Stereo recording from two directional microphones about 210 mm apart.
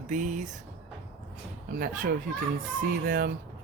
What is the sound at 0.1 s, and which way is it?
Speech, 35° right (ahead or behind).